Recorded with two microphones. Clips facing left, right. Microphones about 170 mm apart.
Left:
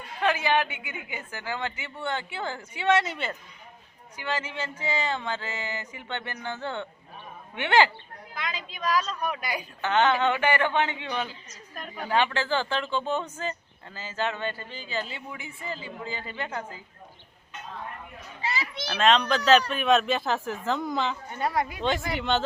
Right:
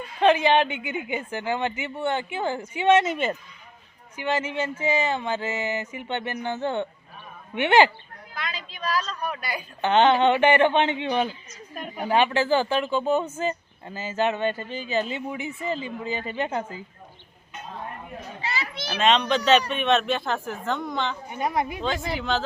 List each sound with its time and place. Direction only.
0.2 s speech: 25° right (ahead or behind)
8.4 s a woman's voice: 15° left (ahead or behind)
9.8 s speech: 25° right (ahead or behind)
11.7 s speech: 10° right (ahead or behind)
18.9 s speech: centre (ahead or behind)
21.2 s speech: 15° right (ahead or behind)
22.1 s speech: centre (ahead or behind)